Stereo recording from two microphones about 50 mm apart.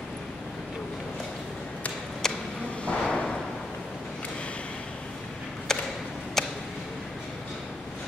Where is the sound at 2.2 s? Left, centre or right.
Centre.